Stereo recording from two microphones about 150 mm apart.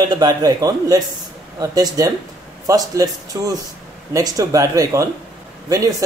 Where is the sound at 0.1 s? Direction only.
25° right (ahead or behind).